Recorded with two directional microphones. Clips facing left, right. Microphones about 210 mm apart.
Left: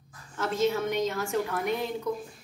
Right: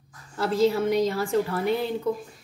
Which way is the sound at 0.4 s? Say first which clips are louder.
Right 5 dB; 35° right (ahead or behind).